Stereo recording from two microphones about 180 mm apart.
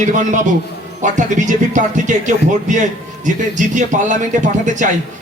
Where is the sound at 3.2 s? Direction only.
45° right (ahead or behind).